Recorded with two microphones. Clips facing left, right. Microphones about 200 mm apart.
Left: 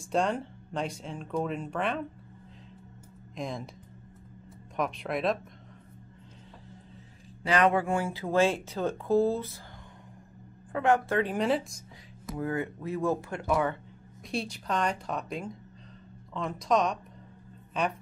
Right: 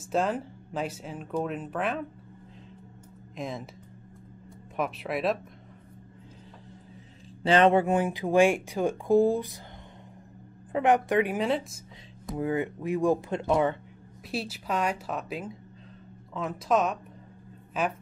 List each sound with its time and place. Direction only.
0.0 s speech: 5° right (ahead or behind)
3.3 s speech: centre (ahead or behind)
4.7 s speech: 5° right (ahead or behind)
7.4 s speech: 25° right (ahead or behind)
10.7 s speech: 20° right (ahead or behind)
11.3 s speech: centre (ahead or behind)
12.4 s speech: 20° right (ahead or behind)
14.3 s speech: 5° right (ahead or behind)